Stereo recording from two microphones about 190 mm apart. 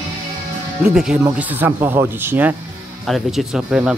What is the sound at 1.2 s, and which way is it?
Speech, 10° right (ahead or behind).